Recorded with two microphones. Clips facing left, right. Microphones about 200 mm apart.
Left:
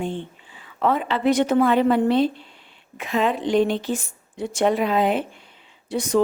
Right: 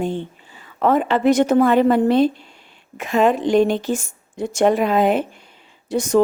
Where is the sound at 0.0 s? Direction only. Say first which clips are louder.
Right 4 dB; 40° right (ahead or behind).